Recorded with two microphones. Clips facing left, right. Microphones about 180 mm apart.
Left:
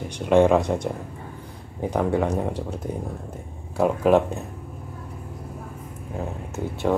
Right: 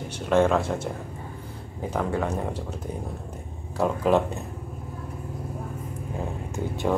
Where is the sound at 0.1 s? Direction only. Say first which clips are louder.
Left 4 dB; 15° left (ahead or behind).